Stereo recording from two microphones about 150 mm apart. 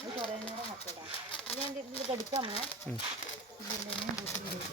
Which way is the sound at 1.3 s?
40° left (ahead or behind).